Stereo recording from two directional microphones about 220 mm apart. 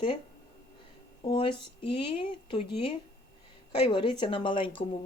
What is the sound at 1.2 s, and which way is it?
A woman's voice, 20° left (ahead or behind).